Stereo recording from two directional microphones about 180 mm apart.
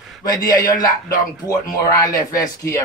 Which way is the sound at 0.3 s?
20° left (ahead or behind).